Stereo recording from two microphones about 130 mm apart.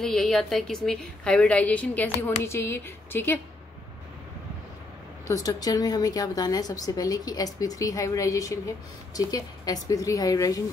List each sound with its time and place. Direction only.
0.0 s a woman's voice: 5° left (ahead or behind); by 3.3 s 20° left (ahead or behind)
5.3 s a woman's voice: 25° left (ahead or behind)